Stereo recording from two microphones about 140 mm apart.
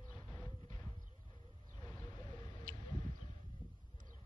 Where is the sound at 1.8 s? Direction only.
30° left (ahead or behind).